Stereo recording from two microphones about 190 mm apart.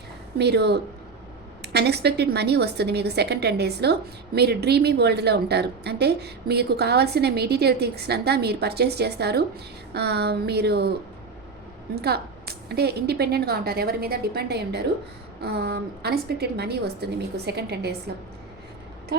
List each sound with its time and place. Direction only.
0.3 s speech: 60° right (ahead or behind)
11.9 s speech: 55° right (ahead or behind)